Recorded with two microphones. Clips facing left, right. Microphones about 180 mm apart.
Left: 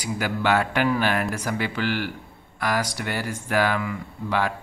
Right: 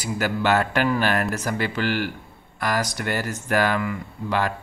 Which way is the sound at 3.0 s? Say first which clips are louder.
Right 2 dB; centre (ahead or behind).